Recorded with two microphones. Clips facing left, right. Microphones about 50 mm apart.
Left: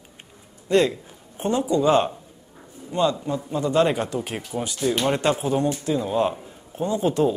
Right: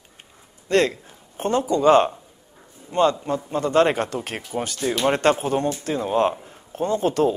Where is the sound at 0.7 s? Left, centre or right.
Right.